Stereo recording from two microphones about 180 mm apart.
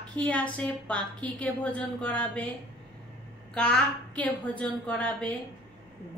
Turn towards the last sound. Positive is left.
turn(degrees=5)  # may be behind; listen again after turning